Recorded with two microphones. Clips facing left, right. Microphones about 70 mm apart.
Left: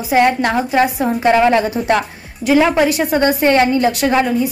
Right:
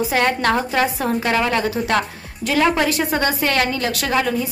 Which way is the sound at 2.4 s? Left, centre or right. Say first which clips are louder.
Left 5 dB; centre.